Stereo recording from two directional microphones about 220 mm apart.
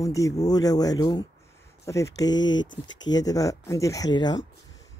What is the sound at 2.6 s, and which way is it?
Speech, 60° left (ahead or behind).